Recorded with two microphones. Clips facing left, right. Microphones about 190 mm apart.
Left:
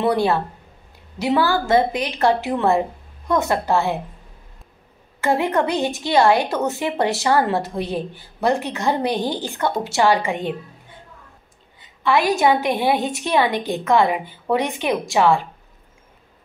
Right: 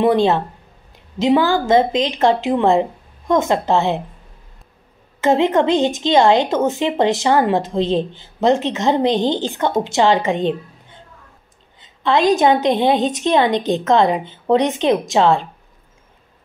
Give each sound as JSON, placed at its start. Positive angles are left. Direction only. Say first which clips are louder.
{"t": 0.0, "sound": "a woman's voice", "louder": "right 4 dB", "side_deg": -20}
{"t": 5.2, "sound": "a woman's voice", "louder": "right 5 dB", "side_deg": -20}
{"t": 11.8, "sound": "a woman's voice", "louder": "right 3 dB", "side_deg": -20}